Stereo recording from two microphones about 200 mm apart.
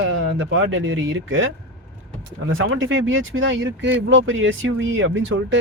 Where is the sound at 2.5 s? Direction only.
80° right.